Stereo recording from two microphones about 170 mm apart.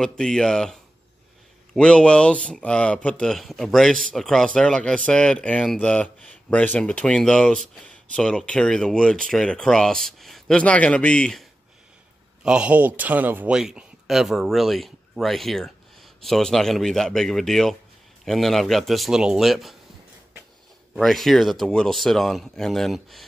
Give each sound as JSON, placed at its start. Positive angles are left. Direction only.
{"t": 0.0, "sound": "a man's voice", "side_deg": 5}
{"t": 12.4, "sound": "a man's voice", "side_deg": -5}
{"t": 20.9, "sound": "a man's voice", "side_deg": 0}